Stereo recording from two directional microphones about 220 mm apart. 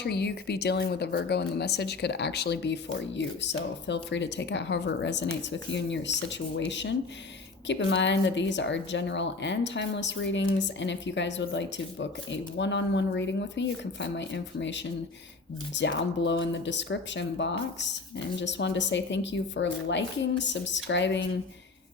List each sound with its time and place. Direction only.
0.0 s a woman's voice: 50° left (ahead or behind)